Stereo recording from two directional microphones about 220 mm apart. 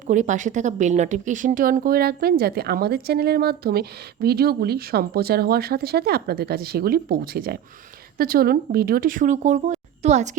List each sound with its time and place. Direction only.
0.1 s speech: 35° right (ahead or behind)